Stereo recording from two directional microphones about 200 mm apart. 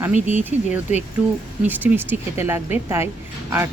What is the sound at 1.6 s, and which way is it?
Speech, 10° right (ahead or behind).